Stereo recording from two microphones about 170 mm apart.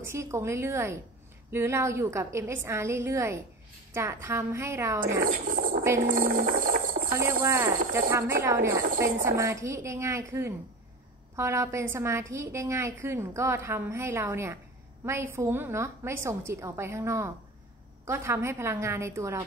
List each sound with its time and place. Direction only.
0.0 s a woman's voice: 15° right (ahead or behind)
5.2 s a sound: 55° right (ahead or behind)
6.0 s music: 55° right (ahead or behind)
7.4 s a woman's voice: 15° right (ahead or behind)